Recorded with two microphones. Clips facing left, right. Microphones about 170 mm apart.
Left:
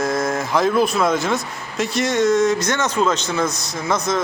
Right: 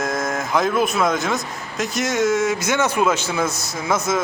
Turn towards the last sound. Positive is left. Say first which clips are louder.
# even
turn(degrees=-5)  # may be behind; listen again after turning